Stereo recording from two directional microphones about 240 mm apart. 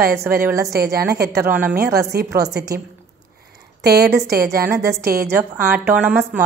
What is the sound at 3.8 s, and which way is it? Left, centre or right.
Speech, right.